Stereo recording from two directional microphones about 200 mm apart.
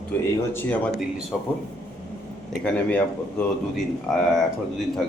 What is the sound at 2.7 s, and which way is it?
A man's voice, 10° left (ahead or behind).